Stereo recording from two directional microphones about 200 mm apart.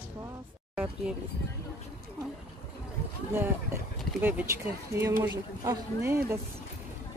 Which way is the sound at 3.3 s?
10° right (ahead or behind).